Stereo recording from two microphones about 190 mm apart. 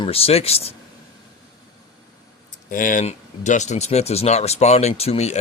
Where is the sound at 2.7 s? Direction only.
45° left (ahead or behind).